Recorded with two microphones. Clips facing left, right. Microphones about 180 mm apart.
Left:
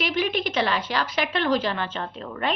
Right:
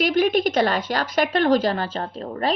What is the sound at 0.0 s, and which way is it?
A woman's voice, 45° right (ahead or behind).